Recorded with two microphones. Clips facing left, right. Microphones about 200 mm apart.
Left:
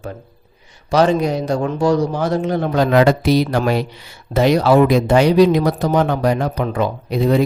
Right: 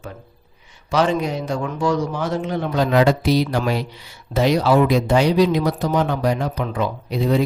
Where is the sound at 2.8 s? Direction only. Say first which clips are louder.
Left 3 dB; 60° left (ahead or behind).